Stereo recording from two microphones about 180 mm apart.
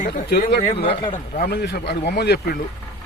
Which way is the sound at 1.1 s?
55° left (ahead or behind).